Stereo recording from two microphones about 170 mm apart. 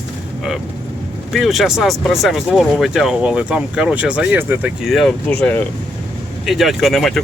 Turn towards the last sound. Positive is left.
turn(degrees=0)  # may be behind; listen again after turning